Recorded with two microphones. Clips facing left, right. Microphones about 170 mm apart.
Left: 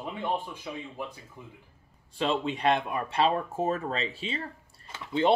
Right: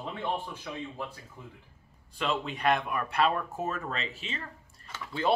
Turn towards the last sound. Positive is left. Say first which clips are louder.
# left 5 dB
turn(degrees=25)  # may be behind; listen again after turning